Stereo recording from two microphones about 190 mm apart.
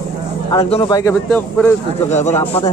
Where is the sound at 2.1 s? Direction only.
35° left (ahead or behind).